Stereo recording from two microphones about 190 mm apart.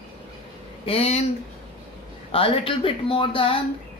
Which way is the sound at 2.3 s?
30° left (ahead or behind).